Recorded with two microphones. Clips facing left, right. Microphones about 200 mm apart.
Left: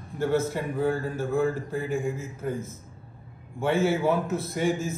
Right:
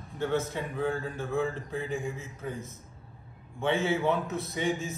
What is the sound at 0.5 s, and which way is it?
Speech, 5° left (ahead or behind).